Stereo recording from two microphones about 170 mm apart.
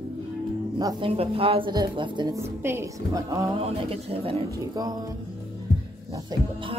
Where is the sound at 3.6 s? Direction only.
35° right (ahead or behind).